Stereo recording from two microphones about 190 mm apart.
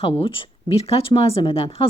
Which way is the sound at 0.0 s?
30° left (ahead or behind).